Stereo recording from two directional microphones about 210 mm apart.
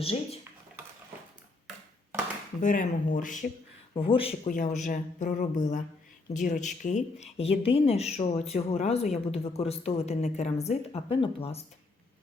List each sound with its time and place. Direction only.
0.0 s speech: 25° left (ahead or behind)
2.6 s speech: 40° left (ahead or behind)
3.9 s speech: 25° left (ahead or behind)
4.4 s speech: 40° left (ahead or behind)